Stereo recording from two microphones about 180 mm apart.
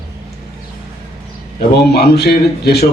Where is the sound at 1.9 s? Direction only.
65° left (ahead or behind).